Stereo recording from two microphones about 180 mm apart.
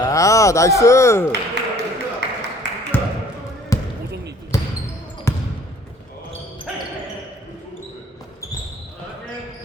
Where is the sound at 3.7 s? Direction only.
20° left (ahead or behind).